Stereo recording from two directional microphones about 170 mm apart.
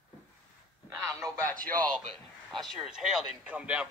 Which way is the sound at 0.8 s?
15° right (ahead or behind).